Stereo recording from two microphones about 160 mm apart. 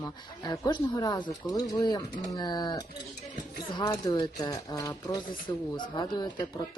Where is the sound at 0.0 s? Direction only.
25° left (ahead or behind).